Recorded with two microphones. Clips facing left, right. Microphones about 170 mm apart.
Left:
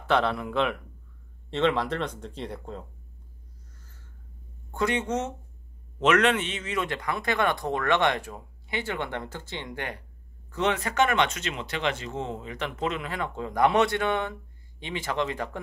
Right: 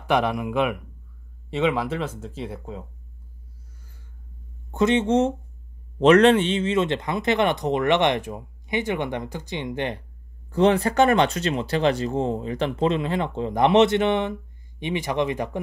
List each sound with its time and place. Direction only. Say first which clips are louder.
0.1 s speech: right 3 dB; 15° right (ahead or behind)
4.6 s speech: right 7 dB; 20° right (ahead or behind)
10.5 s speech: right 8 dB; 35° right (ahead or behind); by 15.6 s 20° right (ahead or behind)